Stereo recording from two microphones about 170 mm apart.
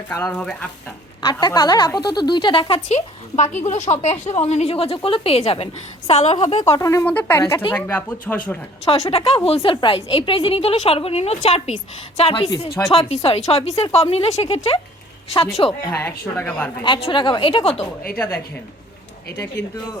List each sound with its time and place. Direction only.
0.1 s speech: 10° left (ahead or behind)
1.2 s a woman's voice: 25° left (ahead or behind)
6.3 s speech: 25° left (ahead or behind); by 8.5 s 10° left (ahead or behind)
8.8 s a woman's voice: 35° left (ahead or behind)
12.4 s speech: 20° left (ahead or behind)
12.9 s a woman's voice: 35° left (ahead or behind)
15.9 s speech: 15° left (ahead or behind)
16.8 s speech: 30° left (ahead or behind)
19.6 s speech: 10° left (ahead or behind)